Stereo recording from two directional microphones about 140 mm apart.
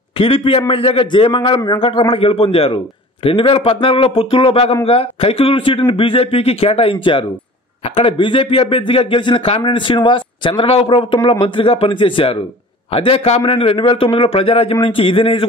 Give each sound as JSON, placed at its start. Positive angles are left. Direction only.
{"t": 0.2, "sound": "a man's voice", "side_deg": 40}